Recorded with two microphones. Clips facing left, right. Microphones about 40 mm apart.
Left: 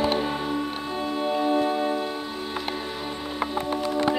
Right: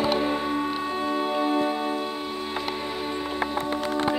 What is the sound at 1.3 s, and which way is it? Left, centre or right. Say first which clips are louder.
Music: left 3 dB; centre.